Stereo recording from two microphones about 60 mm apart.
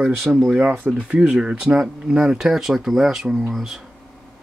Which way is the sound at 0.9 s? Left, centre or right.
Centre.